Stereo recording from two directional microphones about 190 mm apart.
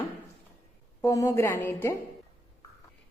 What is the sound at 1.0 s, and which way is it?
Speech, 15° left (ahead or behind).